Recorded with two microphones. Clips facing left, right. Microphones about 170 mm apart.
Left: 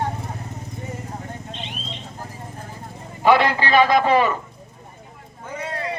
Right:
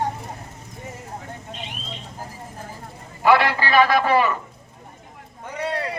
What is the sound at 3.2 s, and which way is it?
A man's voice, 20° left (ahead or behind).